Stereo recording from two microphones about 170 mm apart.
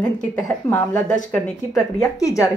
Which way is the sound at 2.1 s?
20° left (ahead or behind).